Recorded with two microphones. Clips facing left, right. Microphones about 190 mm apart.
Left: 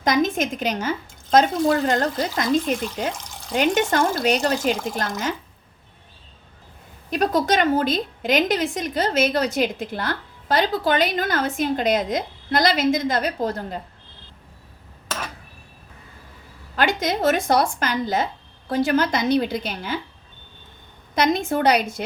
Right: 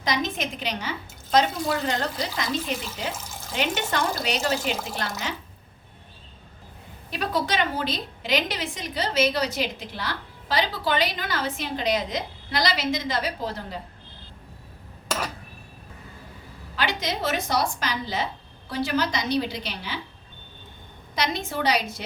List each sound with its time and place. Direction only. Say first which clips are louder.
0.0 s a woman's voice: left 7 dB; 50° left (ahead or behind)
3.1 s water tap: left 3 dB; 5° right (ahead or behind)
3.8 s a woman's voice: left 6 dB; 45° left (ahead or behind)
7.1 s a woman's voice: left 6 dB; 45° left (ahead or behind)
16.7 s a woman's voice: left 6 dB; 50° left (ahead or behind)
21.2 s a woman's voice: left 7 dB; 50° left (ahead or behind)